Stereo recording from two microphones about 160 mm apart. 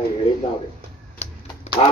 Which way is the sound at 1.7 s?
45° left (ahead or behind).